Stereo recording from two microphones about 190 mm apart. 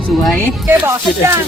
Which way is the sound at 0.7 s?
10° right (ahead or behind).